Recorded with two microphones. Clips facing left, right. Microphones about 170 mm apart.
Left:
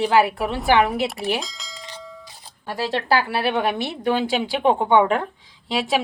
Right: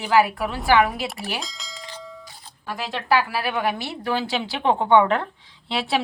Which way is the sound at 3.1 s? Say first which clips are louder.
Right 1 dB; 30° left (ahead or behind).